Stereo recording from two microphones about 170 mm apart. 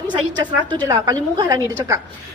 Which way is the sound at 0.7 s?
20° right (ahead or behind).